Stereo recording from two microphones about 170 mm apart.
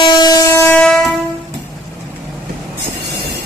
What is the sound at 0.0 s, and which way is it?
Train, 25° left (ahead or behind).